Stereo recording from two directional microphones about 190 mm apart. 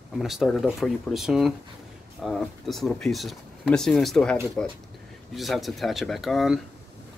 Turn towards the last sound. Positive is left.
turn(degrees=0)  # may be behind; listen again after turning